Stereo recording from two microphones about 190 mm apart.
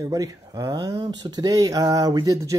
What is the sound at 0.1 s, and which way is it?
Speech, 20° right (ahead or behind).